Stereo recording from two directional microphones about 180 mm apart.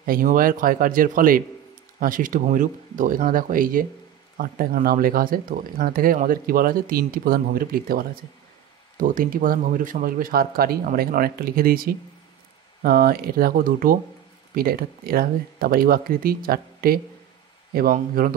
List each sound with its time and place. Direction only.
0.0 s speech: 50° right (ahead or behind)